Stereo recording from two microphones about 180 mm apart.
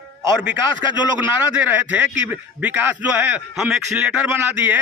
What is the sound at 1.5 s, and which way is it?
Speech, 10° right (ahead or behind).